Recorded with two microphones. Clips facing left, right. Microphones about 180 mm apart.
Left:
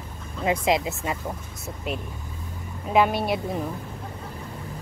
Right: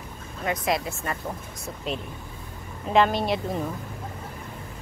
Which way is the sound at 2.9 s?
5° left (ahead or behind).